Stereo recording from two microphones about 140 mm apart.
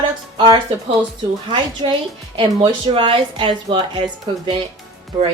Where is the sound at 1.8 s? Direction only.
35° right (ahead or behind).